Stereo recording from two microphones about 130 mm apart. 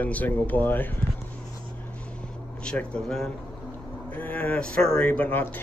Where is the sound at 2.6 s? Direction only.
5° left (ahead or behind).